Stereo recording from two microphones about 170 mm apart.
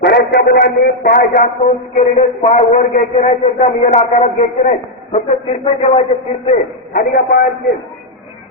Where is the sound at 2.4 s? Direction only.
45° left (ahead or behind).